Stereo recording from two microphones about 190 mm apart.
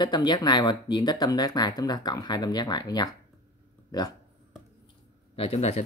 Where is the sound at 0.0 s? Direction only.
20° left (ahead or behind).